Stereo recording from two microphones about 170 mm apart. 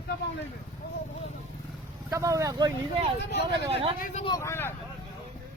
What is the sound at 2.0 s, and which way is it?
Speech, 20° right (ahead or behind).